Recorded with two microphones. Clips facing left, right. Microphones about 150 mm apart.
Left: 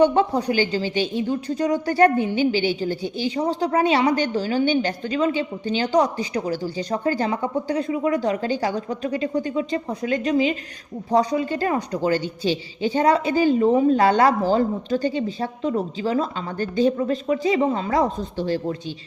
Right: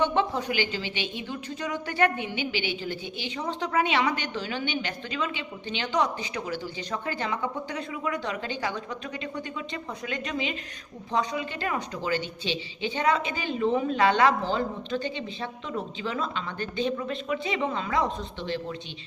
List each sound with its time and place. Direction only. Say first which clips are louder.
0.0 s speech: left 8 dB; 40° left (ahead or behind)